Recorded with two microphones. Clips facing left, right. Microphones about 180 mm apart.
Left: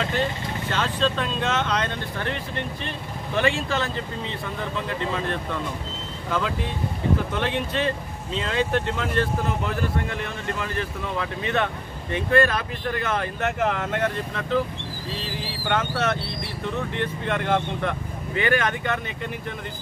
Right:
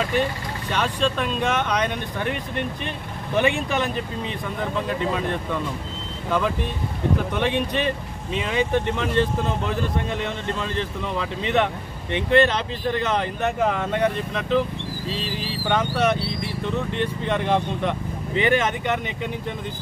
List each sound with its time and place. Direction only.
0.1 s speech: 15° right (ahead or behind)
7.3 s speech: 15° right (ahead or behind)